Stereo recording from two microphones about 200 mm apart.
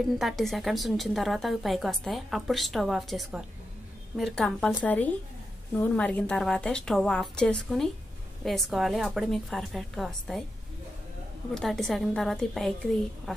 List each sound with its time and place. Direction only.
0.2 s a woman's voice: centre (ahead or behind)
11.5 s a woman's voice: centre (ahead or behind)